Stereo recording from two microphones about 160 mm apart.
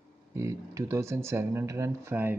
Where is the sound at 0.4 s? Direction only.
20° right (ahead or behind).